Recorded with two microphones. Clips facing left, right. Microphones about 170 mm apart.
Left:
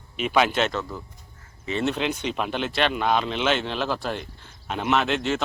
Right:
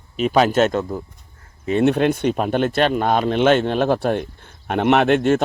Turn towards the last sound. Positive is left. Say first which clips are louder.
# right 8 dB
turn(degrees=-50)  # may be behind; listen again after turning